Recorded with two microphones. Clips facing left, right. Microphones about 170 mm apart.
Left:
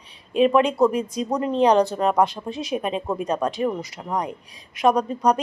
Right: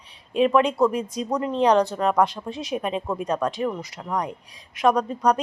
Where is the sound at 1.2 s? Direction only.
15° left (ahead or behind).